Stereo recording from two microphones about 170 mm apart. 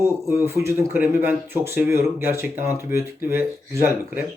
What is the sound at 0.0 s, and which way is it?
Speech, 15° right (ahead or behind).